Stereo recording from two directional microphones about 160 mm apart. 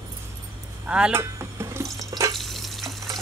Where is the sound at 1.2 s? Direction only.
15° right (ahead or behind).